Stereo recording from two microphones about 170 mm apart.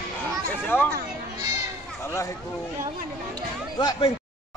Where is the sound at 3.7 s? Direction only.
30° left (ahead or behind).